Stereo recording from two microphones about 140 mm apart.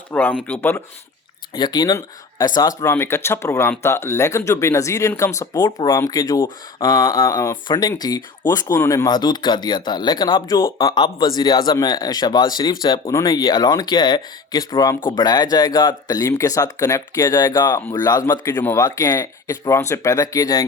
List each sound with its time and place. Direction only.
0.1 s speech: 10° left (ahead or behind)
1.5 s speech: 30° left (ahead or behind)